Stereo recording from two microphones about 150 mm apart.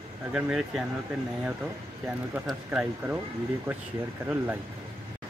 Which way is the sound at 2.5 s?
5° right (ahead or behind).